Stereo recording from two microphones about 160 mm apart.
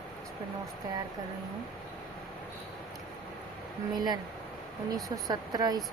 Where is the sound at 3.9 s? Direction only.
25° right (ahead or behind).